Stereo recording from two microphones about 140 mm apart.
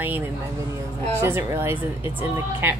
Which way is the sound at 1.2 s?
20° right (ahead or behind).